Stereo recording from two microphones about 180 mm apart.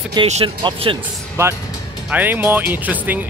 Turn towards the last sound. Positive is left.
turn(degrees=-10)  # may be behind; listen again after turning